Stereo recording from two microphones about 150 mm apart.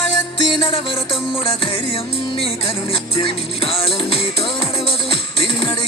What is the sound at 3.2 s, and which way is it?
Music, 40° left (ahead or behind).